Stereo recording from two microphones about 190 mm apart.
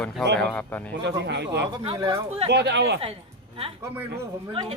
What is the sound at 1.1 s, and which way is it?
Speech, 65° right (ahead or behind).